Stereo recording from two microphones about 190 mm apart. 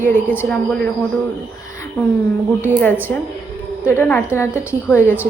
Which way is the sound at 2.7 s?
10° left (ahead or behind).